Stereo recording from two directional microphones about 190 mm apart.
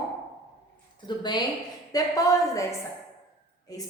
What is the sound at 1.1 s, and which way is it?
A woman's voice, 20° left (ahead or behind).